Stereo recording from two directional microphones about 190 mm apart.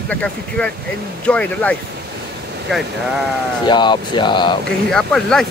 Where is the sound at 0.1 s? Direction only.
5° left (ahead or behind).